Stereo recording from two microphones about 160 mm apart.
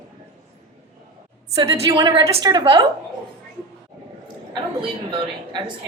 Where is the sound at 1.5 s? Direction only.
20° right (ahead or behind).